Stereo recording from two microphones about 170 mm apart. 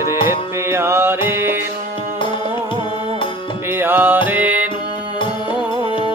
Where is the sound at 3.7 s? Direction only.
10° right (ahead or behind).